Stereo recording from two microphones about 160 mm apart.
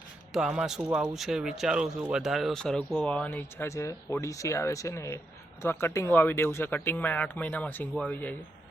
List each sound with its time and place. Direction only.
0.3 s a man's voice: 5° right (ahead or behind)